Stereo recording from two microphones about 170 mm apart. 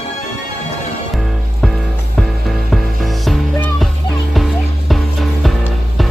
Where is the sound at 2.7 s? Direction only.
Centre (ahead or behind).